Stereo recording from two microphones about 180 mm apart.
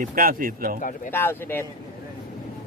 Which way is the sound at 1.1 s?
10° left (ahead or behind).